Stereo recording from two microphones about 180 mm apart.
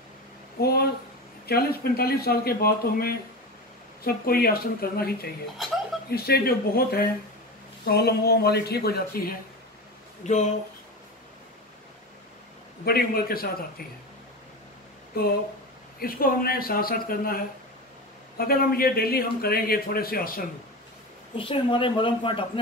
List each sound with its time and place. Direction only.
0.6 s a sound: 60° left (ahead or behind)
1.4 s a man's voice: 60° left (ahead or behind)
10.2 s speech: 40° left (ahead or behind)
12.8 s a man's voice: 55° left (ahead or behind)
16.0 s a man's voice: 55° left (ahead or behind)
18.4 s a man's voice: 55° left (ahead or behind)
21.4 s speech: 30° left (ahead or behind)